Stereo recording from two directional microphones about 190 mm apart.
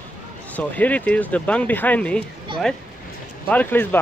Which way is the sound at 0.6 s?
10° left (ahead or behind).